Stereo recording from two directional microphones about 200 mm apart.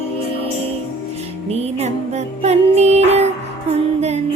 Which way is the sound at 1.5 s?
30° right (ahead or behind).